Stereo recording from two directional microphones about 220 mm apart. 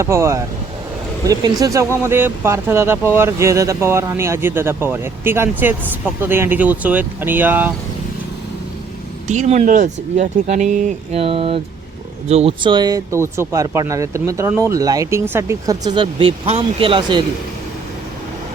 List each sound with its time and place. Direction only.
0.0 s speech: 15° right (ahead or behind)
9.2 s speech: 30° right (ahead or behind)